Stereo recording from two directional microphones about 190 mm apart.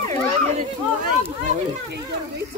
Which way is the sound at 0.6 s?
40° right (ahead or behind).